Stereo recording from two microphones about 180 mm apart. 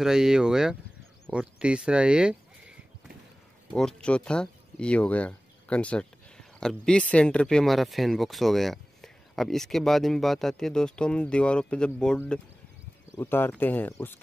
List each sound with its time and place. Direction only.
0.0 s speech: 5° right (ahead or behind)
3.7 s speech: 5° left (ahead or behind)